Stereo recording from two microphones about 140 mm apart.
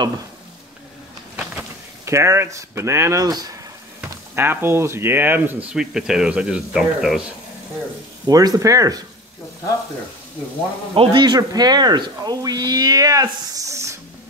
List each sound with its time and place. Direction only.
1.4 s a sound: 5° right (ahead or behind)
2.0 s speech: 20° right (ahead or behind)
4.0 s speech: 15° right (ahead or behind)
8.3 s speech: 25° right (ahead or behind)
11.0 s speech: 35° right (ahead or behind); by 13.9 s 20° right (ahead or behind)